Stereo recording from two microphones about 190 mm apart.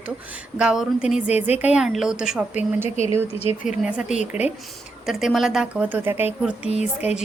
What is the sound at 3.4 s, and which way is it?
Speech, 35° left (ahead or behind).